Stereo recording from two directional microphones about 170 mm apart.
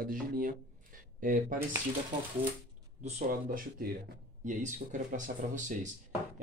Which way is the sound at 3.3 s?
55° right (ahead or behind).